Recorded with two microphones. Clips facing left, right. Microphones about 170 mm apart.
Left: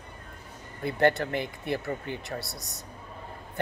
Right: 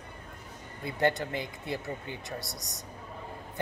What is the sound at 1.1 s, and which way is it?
Speech, 15° right (ahead or behind).